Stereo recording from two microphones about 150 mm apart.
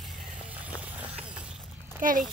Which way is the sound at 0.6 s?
10° right (ahead or behind).